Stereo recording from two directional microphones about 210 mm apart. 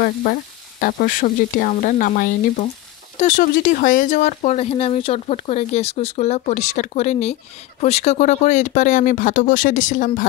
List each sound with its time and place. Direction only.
0.0 s speech: 45° left (ahead or behind)